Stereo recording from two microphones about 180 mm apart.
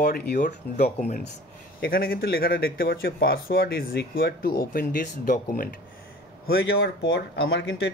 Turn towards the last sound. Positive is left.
turn(degrees=70)  # may be behind; listen again after turning